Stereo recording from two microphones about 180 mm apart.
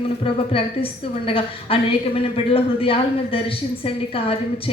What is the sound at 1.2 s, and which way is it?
A woman's voice, 30° left (ahead or behind).